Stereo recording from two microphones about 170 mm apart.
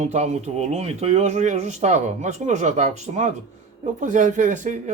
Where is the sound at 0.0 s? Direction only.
40° right (ahead or behind).